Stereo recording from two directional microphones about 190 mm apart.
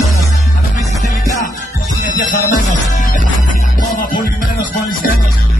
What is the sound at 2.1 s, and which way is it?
Music, 45° left (ahead or behind).